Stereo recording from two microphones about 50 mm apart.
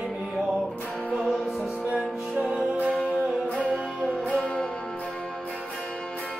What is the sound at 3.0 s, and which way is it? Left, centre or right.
Music, left.